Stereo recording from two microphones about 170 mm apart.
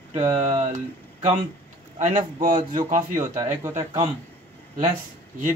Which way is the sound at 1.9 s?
45° right (ahead or behind).